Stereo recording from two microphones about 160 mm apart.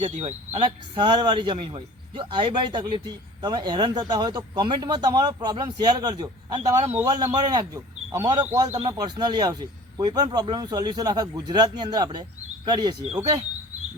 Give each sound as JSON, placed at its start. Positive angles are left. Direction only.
{"t": 0.0, "sound": "speech", "side_deg": -40}